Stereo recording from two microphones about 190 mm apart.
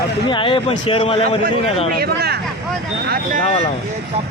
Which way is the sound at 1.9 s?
55° right (ahead or behind).